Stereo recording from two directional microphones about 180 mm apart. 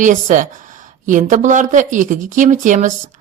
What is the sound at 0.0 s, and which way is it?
Speech, 45° right (ahead or behind).